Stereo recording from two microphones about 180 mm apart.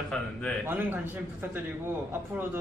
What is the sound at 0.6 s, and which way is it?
Speech, 10° right (ahead or behind).